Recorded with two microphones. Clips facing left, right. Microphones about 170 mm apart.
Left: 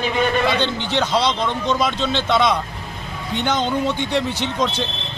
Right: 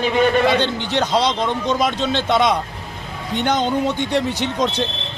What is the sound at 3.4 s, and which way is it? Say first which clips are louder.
Speech: right 2 dB; 40° right (ahead or behind).